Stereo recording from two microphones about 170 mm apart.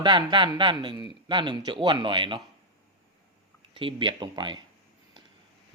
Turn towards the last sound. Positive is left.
turn(degrees=-25)  # may be behind; listen again after turning